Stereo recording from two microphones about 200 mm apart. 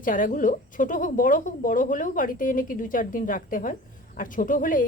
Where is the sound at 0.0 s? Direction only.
45° left (ahead or behind).